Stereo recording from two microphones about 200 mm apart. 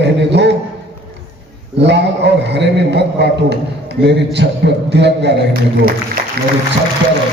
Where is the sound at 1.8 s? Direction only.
60° right (ahead or behind).